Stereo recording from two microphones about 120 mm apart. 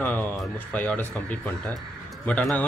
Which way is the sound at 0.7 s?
15° left (ahead or behind).